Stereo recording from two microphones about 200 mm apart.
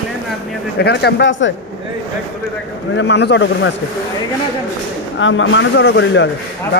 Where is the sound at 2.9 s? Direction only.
60° left (ahead or behind).